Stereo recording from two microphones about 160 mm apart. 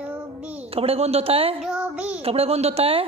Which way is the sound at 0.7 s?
40° right (ahead or behind).